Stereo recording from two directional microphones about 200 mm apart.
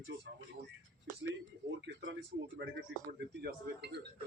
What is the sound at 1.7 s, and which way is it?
Speech, 65° right (ahead or behind).